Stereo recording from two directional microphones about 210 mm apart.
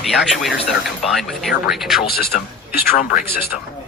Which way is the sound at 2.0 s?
45° left (ahead or behind).